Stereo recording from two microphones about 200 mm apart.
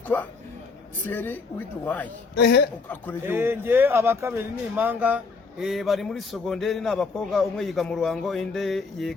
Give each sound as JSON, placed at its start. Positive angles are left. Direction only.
{"t": 0.1, "sound": "a sound", "side_deg": 10}
{"t": 1.0, "sound": "a woman's voice", "side_deg": 10}
{"t": 2.3, "sound": "a woman's voice", "side_deg": 55}
{"t": 3.2, "sound": "speech", "side_deg": -10}